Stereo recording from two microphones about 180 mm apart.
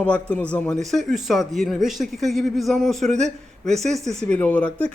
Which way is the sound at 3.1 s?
40° right (ahead or behind).